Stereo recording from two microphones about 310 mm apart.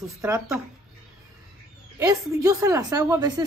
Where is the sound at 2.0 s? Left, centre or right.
Centre.